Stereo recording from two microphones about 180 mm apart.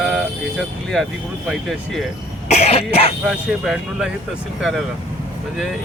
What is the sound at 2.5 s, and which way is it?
Cough, 35° left (ahead or behind).